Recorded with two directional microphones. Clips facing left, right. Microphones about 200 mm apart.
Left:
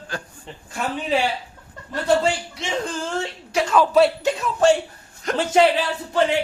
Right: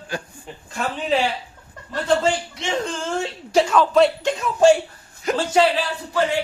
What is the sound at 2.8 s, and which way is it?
Speech, centre (ahead or behind).